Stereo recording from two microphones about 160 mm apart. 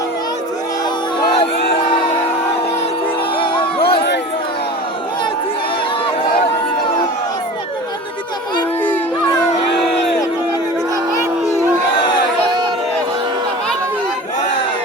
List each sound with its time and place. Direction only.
3.3 s music: 30° left (ahead or behind)